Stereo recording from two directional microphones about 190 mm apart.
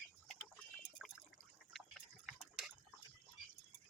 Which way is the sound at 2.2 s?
Centre (ahead or behind).